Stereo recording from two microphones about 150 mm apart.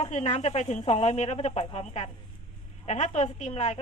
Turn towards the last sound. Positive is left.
turn(degrees=45)  # may be behind; listen again after turning